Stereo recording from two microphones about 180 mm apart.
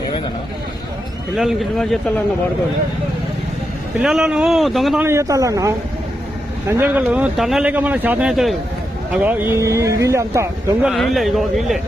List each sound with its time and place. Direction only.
1.4 s speech: centre (ahead or behind)
3.9 s speech: 5° right (ahead or behind)
5.0 s speech: 15° right (ahead or behind)
9.2 s speech: 10° right (ahead or behind)
10.8 s speech: centre (ahead or behind)